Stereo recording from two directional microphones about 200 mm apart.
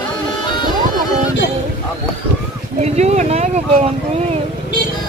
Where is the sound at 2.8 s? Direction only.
35° right (ahead or behind).